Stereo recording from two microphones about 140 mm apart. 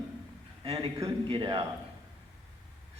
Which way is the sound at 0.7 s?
40° right (ahead or behind).